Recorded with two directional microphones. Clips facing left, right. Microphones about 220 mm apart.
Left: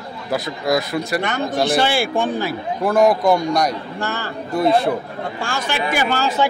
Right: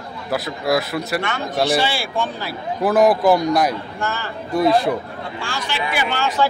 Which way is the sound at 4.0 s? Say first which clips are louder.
Left 1 dB; 35° left (ahead or behind).